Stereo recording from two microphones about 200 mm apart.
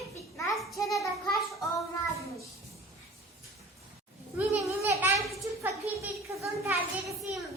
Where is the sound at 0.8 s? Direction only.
15° left (ahead or behind).